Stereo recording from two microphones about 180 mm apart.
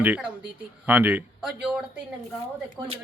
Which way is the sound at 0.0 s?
10° right (ahead or behind).